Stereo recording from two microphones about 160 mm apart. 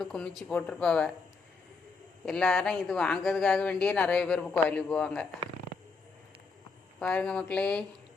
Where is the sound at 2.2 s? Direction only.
5° left (ahead or behind).